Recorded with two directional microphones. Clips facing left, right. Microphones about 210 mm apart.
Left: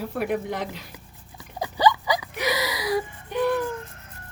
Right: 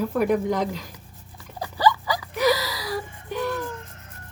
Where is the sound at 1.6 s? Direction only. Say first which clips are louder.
Left 1 dB; 20° left (ahead or behind).